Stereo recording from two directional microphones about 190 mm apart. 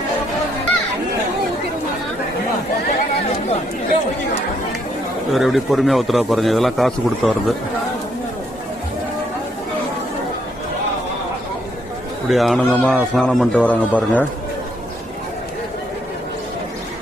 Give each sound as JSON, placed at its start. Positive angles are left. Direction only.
{"t": 5.3, "sound": "a man's voice", "side_deg": 0}
{"t": 12.3, "sound": "a man's voice", "side_deg": 0}